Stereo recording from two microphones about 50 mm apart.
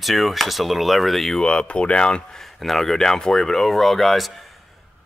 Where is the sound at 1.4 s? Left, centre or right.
Centre.